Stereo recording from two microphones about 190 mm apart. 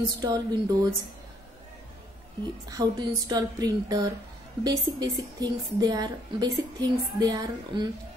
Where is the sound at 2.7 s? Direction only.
20° right (ahead or behind).